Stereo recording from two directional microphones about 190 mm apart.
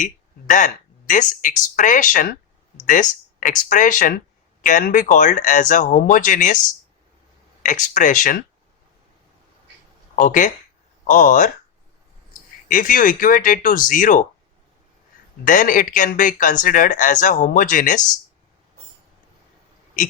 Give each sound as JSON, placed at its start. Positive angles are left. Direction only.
{"t": 0.0, "sound": "speech", "side_deg": 40}
{"t": 7.6, "sound": "speech", "side_deg": 40}
{"t": 10.2, "sound": "speech", "side_deg": 45}
{"t": 15.4, "sound": "speech", "side_deg": 45}